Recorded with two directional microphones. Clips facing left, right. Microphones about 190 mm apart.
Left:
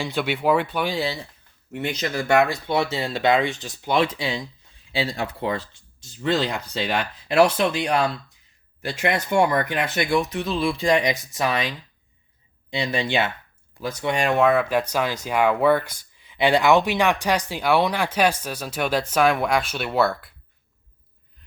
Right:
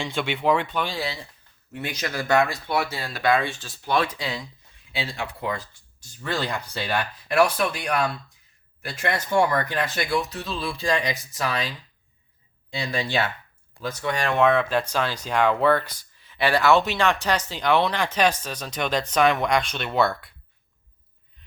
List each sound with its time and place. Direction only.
0.0 s speech: 5° left (ahead or behind)
2.3 s speech: 20° left (ahead or behind)
4.9 s speech: 35° left (ahead or behind)
12.8 s speech: 20° left (ahead or behind)
14.3 s speech: 5° left (ahead or behind)